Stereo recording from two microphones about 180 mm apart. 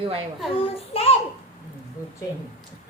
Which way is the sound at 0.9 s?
35° left (ahead or behind).